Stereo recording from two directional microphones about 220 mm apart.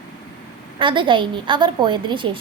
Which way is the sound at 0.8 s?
20° right (ahead or behind).